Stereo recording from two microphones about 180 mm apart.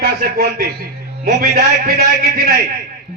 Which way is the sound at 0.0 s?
55° right (ahead or behind).